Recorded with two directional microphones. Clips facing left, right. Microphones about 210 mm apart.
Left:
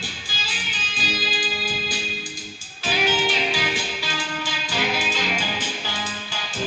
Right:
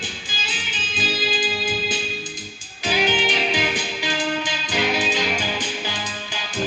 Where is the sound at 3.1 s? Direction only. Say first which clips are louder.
Right 1 dB; 15° right (ahead or behind).